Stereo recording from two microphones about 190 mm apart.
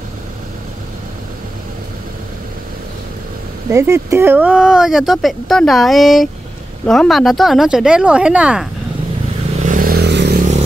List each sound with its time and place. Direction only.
3.7 s speech: 15° right (ahead or behind)
9.6 s vehicle: 45° right (ahead or behind); by 10.4 s 60° right (ahead or behind)